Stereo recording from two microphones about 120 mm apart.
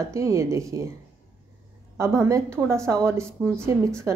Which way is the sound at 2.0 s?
25° right (ahead or behind).